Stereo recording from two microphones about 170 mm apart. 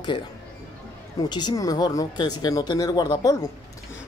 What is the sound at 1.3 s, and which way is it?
Speech, 25° left (ahead or behind).